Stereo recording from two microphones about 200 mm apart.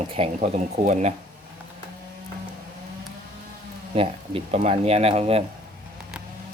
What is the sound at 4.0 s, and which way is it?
Speech, 30° right (ahead or behind).